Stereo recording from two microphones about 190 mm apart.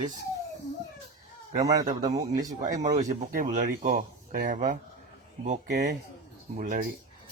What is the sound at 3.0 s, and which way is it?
Speech, 45° right (ahead or behind).